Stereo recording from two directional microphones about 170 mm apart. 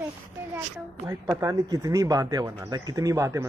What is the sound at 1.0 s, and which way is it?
Speech, 20° right (ahead or behind).